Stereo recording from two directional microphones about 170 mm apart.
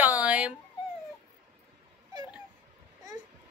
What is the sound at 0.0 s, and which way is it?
Dog, 10° right (ahead or behind).